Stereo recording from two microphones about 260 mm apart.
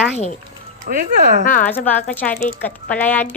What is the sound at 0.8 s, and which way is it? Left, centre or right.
Speech, right.